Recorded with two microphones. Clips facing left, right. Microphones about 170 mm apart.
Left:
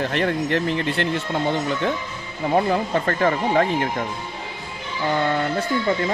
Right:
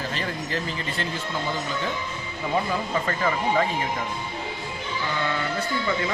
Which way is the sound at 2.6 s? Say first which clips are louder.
Left 5 dB; 55° left (ahead or behind).